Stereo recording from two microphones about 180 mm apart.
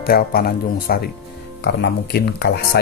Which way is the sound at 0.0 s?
60° left (ahead or behind).